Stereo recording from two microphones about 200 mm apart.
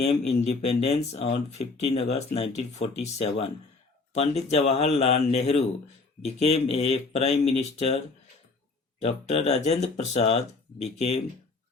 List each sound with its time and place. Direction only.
0.0 s speech: 30° left (ahead or behind)
9.0 s speech: 30° left (ahead or behind)